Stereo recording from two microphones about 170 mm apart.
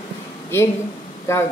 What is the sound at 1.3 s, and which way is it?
Speech, 15° left (ahead or behind).